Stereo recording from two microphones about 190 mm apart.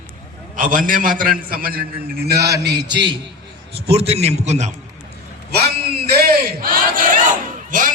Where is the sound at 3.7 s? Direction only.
30° right (ahead or behind).